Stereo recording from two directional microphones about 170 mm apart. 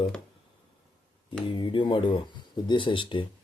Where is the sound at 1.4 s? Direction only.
30° left (ahead or behind).